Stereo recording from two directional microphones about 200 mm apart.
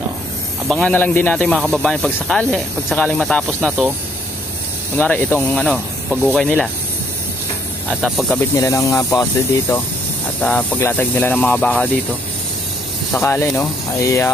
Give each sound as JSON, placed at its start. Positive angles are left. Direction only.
{"t": 0.7, "sound": "speech", "side_deg": 5}
{"t": 4.9, "sound": "speech", "side_deg": 10}
{"t": 8.0, "sound": "speech", "side_deg": 0}
{"t": 8.5, "sound": "speech", "side_deg": 15}
{"t": 13.1, "sound": "speech", "side_deg": 10}